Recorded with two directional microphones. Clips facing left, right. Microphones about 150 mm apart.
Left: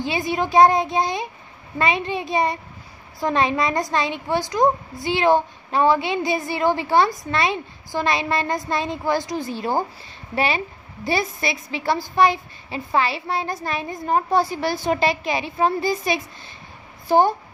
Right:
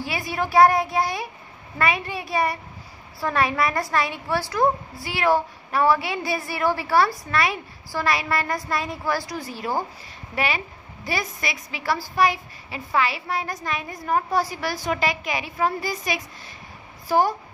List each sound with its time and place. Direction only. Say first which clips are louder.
0.0 s a woman's voice: left 4 dB; 20° left (ahead or behind)